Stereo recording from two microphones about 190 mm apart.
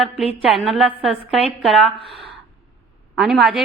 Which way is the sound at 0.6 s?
Centre (ahead or behind).